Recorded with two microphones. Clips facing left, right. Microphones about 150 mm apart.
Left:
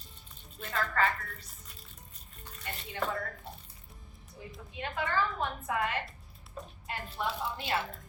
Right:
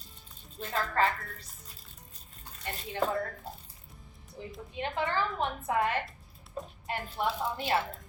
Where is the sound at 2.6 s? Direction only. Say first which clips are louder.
Right 4 dB; 30° right (ahead or behind).